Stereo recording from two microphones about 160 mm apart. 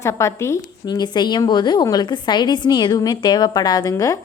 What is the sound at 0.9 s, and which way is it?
A woman's voice, 25° left (ahead or behind).